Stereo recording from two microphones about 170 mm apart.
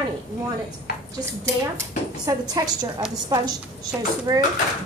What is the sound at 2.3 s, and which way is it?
Speech, 20° right (ahead or behind).